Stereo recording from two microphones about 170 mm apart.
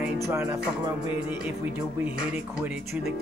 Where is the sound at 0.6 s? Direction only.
5° right (ahead or behind).